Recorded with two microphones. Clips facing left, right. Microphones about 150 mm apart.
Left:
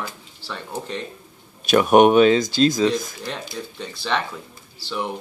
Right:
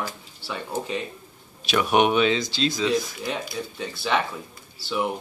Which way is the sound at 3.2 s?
Centre (ahead or behind).